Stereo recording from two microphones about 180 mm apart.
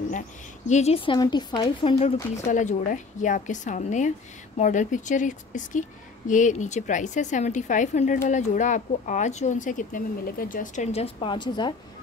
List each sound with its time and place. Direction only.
0.7 s speech: 40° left (ahead or behind)
2.4 s a woman's voice: 45° left (ahead or behind); by 11.7 s 25° left (ahead or behind)